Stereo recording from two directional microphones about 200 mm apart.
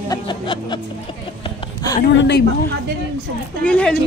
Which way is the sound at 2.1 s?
60° left (ahead or behind).